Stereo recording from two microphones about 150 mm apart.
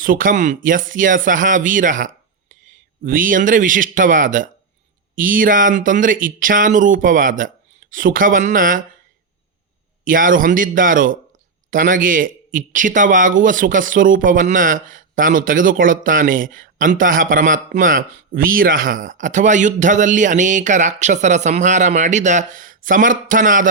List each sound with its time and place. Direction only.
0.0 s speech: 65° right (ahead or behind)
10.0 s speech: 65° right (ahead or behind)